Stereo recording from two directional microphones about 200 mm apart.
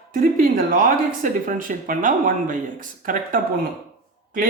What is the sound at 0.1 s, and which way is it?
Speech, 45° right (ahead or behind).